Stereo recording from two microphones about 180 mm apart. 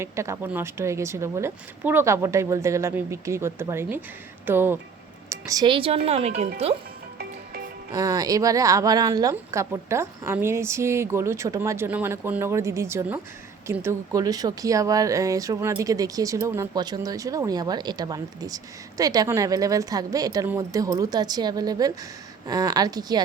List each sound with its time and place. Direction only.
0.0 s a woman's voice: 15° right (ahead or behind); by 6.7 s 35° right (ahead or behind)
7.9 s a woman's voice: 20° right (ahead or behind)